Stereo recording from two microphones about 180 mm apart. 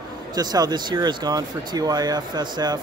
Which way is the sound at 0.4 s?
20° right (ahead or behind).